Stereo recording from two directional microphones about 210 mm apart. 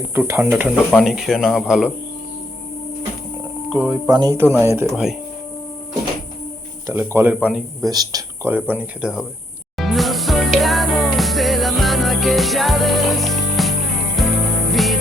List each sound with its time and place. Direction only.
0.1 s speech: 10° right (ahead or behind)
3.8 s speech: 20° right (ahead or behind)
6.8 s speech: 10° right (ahead or behind)
7.8 s speech: 20° right (ahead or behind)
9.7 s music: centre (ahead or behind)